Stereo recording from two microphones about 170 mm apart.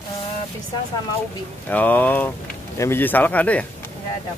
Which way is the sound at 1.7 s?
10° left (ahead or behind).